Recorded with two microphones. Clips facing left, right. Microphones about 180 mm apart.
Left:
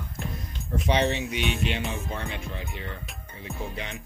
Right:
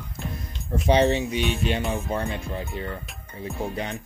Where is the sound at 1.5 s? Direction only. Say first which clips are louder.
Right 3 dB; 45° right (ahead or behind).